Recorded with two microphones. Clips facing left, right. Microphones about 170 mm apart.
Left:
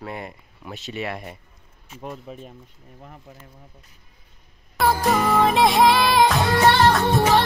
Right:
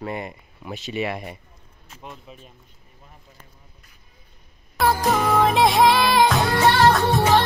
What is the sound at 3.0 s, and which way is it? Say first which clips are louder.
Speech: left 7 dB; 65° left (ahead or behind).